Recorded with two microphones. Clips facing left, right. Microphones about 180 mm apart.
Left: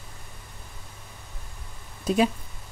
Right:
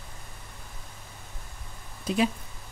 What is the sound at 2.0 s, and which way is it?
Speech, 45° left (ahead or behind).